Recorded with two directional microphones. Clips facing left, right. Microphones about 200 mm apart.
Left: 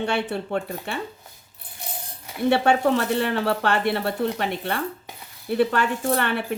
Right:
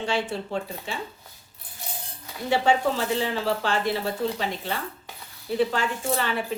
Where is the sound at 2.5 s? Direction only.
65° left (ahead or behind).